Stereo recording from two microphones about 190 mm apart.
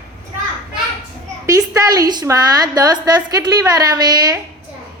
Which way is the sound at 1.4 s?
20° right (ahead or behind).